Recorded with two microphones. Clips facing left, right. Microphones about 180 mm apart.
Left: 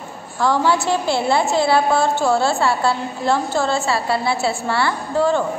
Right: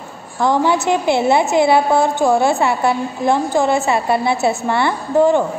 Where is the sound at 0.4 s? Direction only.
20° right (ahead or behind).